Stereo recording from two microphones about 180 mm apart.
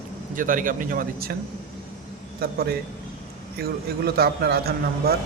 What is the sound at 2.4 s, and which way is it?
Speech, 60° right (ahead or behind).